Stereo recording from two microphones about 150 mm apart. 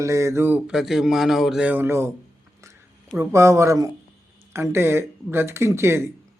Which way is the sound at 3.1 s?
20° right (ahead or behind).